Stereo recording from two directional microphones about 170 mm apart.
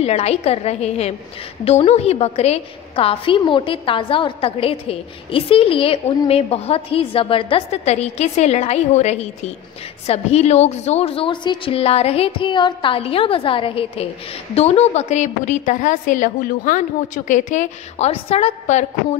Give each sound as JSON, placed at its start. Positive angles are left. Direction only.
{"t": 0.0, "sound": "a woman's voice", "side_deg": 40}